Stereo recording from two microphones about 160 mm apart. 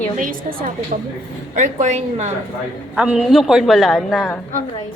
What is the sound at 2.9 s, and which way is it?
Speech, 5° right (ahead or behind).